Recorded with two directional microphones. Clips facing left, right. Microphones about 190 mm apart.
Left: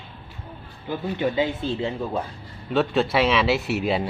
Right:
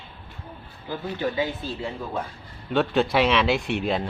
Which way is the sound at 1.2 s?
25° left (ahead or behind).